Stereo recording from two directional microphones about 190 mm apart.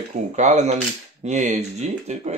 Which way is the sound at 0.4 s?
35° right (ahead or behind).